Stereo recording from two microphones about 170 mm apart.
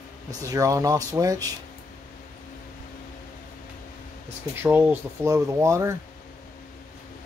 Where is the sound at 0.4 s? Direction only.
20° right (ahead or behind).